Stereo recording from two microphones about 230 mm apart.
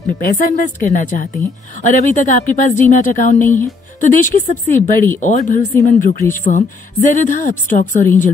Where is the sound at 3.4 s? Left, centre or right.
Centre.